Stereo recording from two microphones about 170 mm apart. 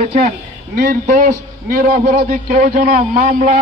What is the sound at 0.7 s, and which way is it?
A man's voice, 55° right (ahead or behind).